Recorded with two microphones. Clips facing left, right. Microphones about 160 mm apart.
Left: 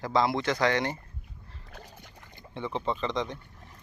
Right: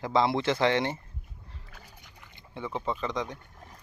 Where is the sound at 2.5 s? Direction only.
10° right (ahead or behind).